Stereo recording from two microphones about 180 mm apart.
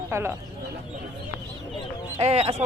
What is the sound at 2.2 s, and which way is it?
Speech, 35° right (ahead or behind).